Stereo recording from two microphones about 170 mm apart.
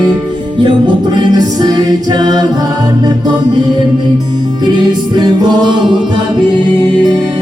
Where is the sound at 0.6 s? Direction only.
25° right (ahead or behind).